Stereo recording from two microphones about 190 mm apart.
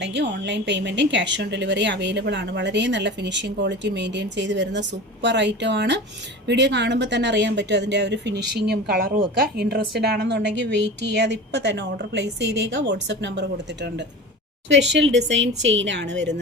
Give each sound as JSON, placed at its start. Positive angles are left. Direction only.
{"t": 0.0, "sound": "a woman's voice", "side_deg": -65}
{"t": 14.7, "sound": "a woman's voice", "side_deg": -75}